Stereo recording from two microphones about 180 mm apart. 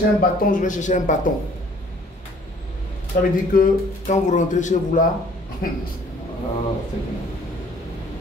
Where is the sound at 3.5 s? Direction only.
45° left (ahead or behind).